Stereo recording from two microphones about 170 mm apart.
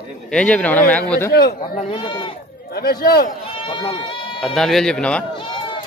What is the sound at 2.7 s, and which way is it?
Speech, 70° left (ahead or behind).